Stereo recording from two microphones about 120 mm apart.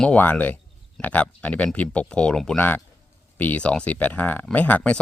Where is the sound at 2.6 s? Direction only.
15° left (ahead or behind).